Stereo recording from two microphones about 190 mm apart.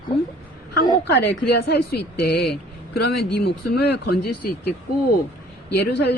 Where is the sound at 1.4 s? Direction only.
55° left (ahead or behind).